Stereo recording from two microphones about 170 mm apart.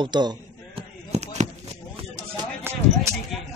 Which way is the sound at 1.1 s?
40° right (ahead or behind).